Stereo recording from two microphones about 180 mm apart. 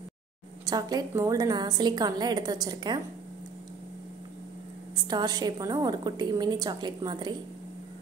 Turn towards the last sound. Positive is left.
turn(degrees=-25)  # may be behind; listen again after turning